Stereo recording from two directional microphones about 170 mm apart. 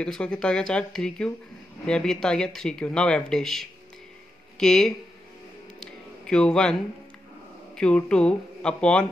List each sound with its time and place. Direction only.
0.0 s speech: 5° left (ahead or behind)
5.8 s a sound: 5° left (ahead or behind)
7.7 s speech: 5° left (ahead or behind)